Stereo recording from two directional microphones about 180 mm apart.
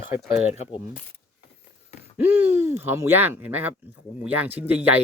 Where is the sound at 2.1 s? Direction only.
10° right (ahead or behind).